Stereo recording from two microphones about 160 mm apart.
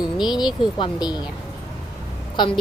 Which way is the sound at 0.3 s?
25° left (ahead or behind).